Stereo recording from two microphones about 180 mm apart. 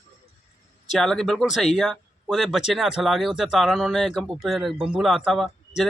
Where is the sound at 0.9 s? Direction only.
Centre (ahead or behind).